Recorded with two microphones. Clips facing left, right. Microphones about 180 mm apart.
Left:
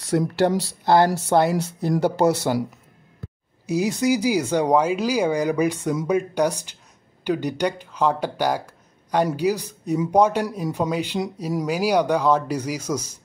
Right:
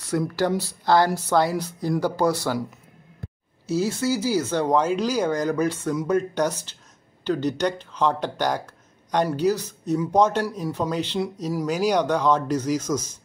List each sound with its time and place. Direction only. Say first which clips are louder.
0.1 s speech: left 3 dB; 30° left (ahead or behind)
3.6 s speech: left 2 dB; 15° left (ahead or behind)